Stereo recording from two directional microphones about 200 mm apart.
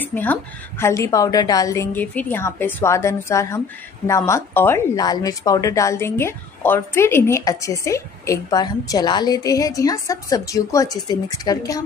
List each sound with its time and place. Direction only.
0.0 s a woman's voice: 10° left (ahead or behind)